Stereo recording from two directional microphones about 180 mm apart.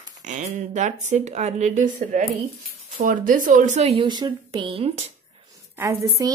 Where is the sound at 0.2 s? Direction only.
45° right (ahead or behind).